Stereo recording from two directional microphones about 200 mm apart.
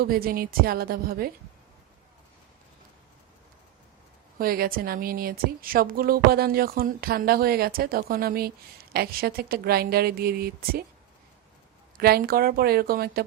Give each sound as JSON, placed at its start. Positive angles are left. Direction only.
{"t": 0.0, "sound": "speech", "side_deg": -50}
{"t": 4.4, "sound": "speech", "side_deg": -50}
{"t": 11.9, "sound": "speech", "side_deg": -50}